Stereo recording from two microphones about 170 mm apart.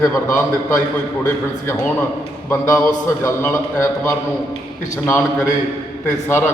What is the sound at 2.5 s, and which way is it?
A man's voice, 15° left (ahead or behind).